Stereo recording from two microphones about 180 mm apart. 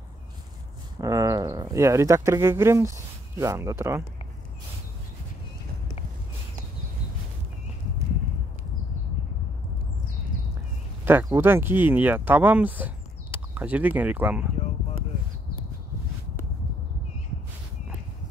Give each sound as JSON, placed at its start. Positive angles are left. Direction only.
{"t": 0.9, "sound": "speech", "side_deg": -20}
{"t": 11.1, "sound": "speech", "side_deg": -10}